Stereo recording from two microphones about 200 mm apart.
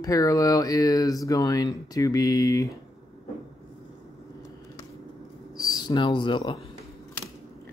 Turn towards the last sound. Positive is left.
turn(degrees=25)  # may be behind; listen again after turning